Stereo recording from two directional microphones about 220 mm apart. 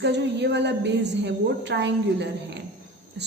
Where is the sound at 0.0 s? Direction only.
50° right (ahead or behind).